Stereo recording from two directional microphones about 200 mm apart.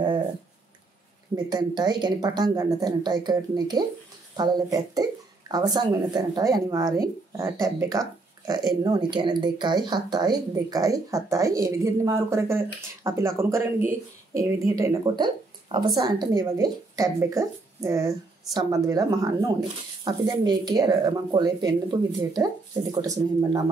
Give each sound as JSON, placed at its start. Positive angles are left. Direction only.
{"t": 1.3, "sound": "a woman's voice", "side_deg": -20}